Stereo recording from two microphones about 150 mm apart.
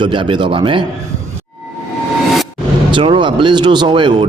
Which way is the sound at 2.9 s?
35° right (ahead or behind).